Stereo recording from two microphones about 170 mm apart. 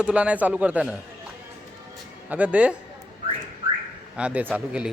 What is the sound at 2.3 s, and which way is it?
Speech, 10° right (ahead or behind).